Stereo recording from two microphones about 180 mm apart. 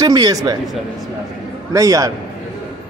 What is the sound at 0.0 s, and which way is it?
Speech, 20° right (ahead or behind).